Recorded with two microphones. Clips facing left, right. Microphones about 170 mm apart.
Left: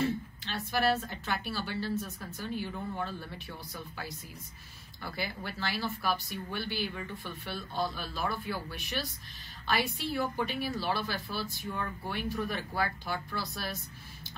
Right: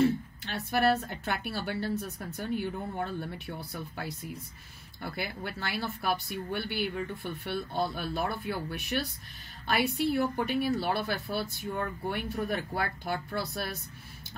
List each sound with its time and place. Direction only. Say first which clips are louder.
0.5 s a woman's voice: right 3 dB; 55° right (ahead or behind)